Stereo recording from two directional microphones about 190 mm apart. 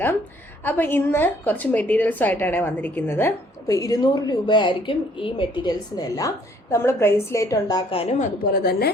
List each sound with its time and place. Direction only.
0.6 s a woman's voice: 10° left (ahead or behind)
8.2 s a woman's voice: 50° left (ahead or behind)